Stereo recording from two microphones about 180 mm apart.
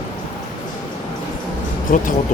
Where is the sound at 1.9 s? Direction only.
50° left (ahead or behind).